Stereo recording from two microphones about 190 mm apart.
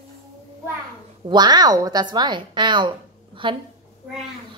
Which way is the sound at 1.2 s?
20° right (ahead or behind).